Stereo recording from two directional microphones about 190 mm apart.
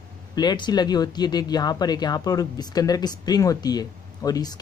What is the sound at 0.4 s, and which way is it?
Speech, 20° left (ahead or behind).